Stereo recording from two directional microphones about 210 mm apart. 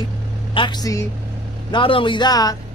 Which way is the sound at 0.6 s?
20° left (ahead or behind).